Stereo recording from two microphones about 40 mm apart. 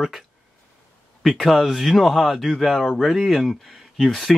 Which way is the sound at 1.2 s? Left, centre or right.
Centre.